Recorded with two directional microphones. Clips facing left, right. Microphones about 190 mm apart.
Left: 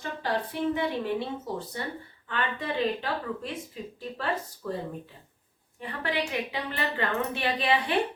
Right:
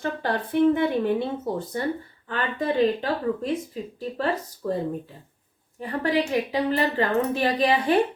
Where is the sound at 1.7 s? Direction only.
45° right (ahead or behind).